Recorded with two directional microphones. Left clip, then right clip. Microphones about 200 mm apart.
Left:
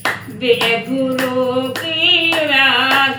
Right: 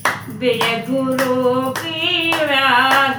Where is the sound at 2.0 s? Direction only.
20° right (ahead or behind).